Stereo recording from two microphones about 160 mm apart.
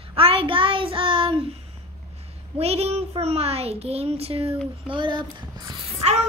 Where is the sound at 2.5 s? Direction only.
40° right (ahead or behind).